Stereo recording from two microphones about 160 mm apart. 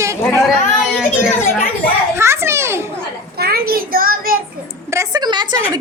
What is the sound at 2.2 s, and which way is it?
Children playing, 15° right (ahead or behind).